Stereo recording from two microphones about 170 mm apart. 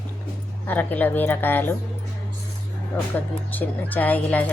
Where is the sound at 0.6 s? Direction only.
10° left (ahead or behind).